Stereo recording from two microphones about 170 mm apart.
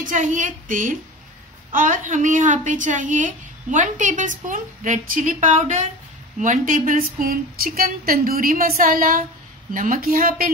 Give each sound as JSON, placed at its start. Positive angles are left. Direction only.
{"t": 0.0, "sound": "a woman's voice", "side_deg": -45}